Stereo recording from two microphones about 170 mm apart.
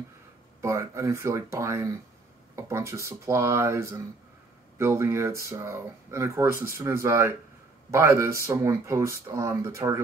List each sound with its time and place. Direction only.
0.6 s speech: 15° right (ahead or behind)